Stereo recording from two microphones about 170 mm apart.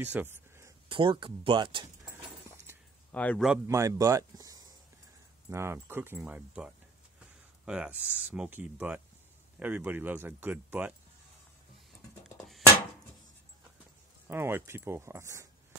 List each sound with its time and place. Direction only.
0.0 s a sound: 10° right (ahead or behind)
0.8 s speech: 30° right (ahead or behind)
2.7 s a sound: 15° right (ahead or behind)
3.1 s a man's voice: 10° left (ahead or behind)
3.6 s speech: 15° right (ahead or behind)
14.2 s speech: 15° right (ahead or behind)